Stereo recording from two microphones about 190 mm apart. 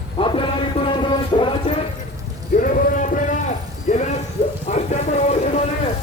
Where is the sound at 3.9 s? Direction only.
40° left (ahead or behind).